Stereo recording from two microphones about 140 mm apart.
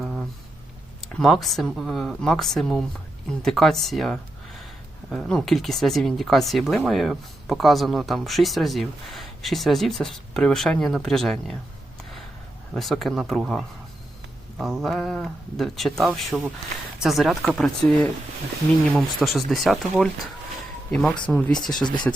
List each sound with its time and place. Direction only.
0.0 s a sound: 5° right (ahead or behind)
1.1 s speech: centre (ahead or behind)
12.7 s speech: centre (ahead or behind)
21.8 s speech: 30° left (ahead or behind)